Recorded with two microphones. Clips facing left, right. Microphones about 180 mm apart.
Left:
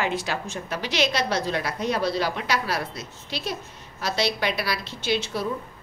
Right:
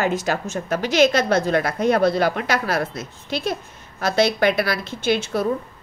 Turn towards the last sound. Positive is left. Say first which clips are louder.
# right 5 dB
turn(degrees=-50)  # may be behind; listen again after turning